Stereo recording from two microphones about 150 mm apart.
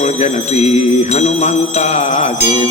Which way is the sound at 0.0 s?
50° left (ahead or behind).